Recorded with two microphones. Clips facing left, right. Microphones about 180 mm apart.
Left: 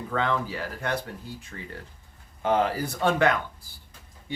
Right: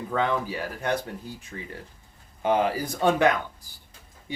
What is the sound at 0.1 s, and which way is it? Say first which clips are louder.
Speech: right 1 dB; 15° right (ahead or behind).